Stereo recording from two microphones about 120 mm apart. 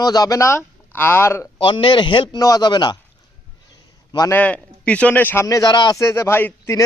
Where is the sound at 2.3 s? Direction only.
30° left (ahead or behind).